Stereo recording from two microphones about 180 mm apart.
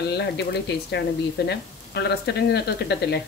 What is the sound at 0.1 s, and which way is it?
Speech, 65° left (ahead or behind).